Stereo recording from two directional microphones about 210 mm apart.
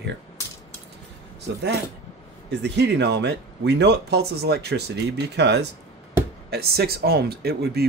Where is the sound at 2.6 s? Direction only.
55° right (ahead or behind).